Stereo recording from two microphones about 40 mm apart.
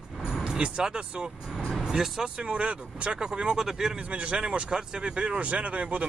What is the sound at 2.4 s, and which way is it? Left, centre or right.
Speech, right.